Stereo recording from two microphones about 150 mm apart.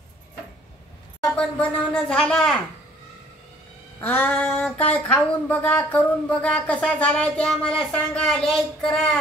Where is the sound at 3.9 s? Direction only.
10° left (ahead or behind).